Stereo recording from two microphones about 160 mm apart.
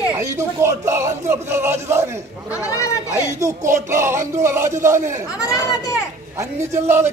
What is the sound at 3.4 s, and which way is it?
Speech, 15° right (ahead or behind).